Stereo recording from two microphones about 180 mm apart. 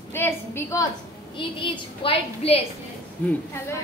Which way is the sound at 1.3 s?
30° left (ahead or behind).